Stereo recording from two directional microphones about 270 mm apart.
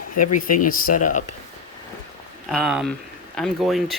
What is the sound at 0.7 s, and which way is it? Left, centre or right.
Speech, left.